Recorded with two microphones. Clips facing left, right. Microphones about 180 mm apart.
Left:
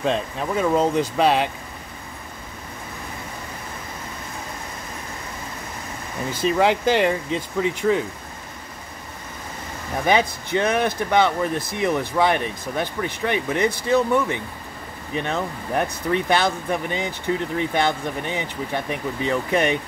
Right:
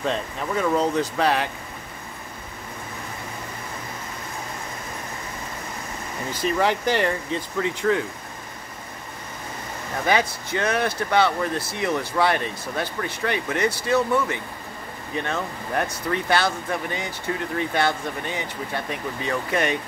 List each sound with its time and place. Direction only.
0.0 s speech: 20° left (ahead or behind)
6.4 s speech: 15° left (ahead or behind)
10.0 s speech: 20° left (ahead or behind)